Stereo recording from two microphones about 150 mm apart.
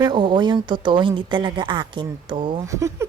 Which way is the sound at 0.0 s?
30° right (ahead or behind).